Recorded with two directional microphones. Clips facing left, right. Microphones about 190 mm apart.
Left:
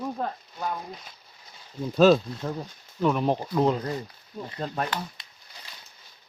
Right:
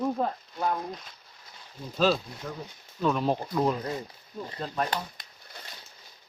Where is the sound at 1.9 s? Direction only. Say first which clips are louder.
Left 7 dB; 45° left (ahead or behind).